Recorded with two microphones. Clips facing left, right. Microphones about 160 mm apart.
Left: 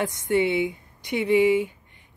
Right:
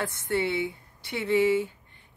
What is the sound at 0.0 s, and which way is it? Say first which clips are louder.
Speech: left 5 dB; 15° left (ahead or behind).